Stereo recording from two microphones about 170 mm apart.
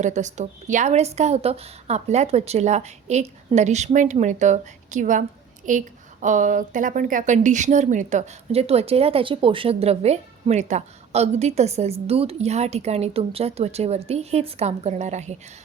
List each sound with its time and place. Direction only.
0.0 s a woman's voice: 45° right (ahead or behind)